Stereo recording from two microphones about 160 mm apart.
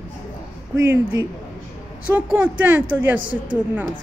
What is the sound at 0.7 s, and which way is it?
Speech, 15° right (ahead or behind).